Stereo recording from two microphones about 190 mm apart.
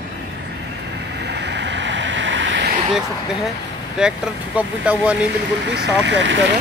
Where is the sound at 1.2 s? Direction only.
65° right (ahead or behind).